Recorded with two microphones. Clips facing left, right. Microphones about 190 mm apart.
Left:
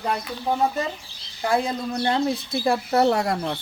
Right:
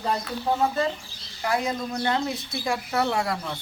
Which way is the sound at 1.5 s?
30° left (ahead or behind).